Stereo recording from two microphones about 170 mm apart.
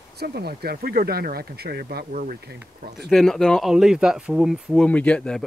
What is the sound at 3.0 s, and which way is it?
Speech, centre (ahead or behind).